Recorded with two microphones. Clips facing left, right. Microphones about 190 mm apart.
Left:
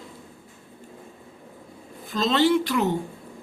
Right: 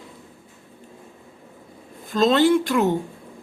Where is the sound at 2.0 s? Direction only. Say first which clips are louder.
Right 4 dB; 50° right (ahead or behind).